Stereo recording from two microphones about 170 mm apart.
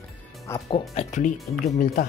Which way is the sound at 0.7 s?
40° left (ahead or behind).